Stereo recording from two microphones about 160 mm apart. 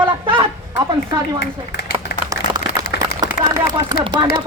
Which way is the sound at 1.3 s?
90° left.